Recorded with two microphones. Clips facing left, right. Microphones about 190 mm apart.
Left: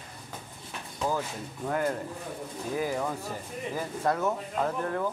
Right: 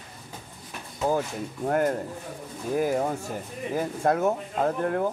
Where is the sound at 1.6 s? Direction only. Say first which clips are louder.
Right 5 dB; 50° right (ahead or behind).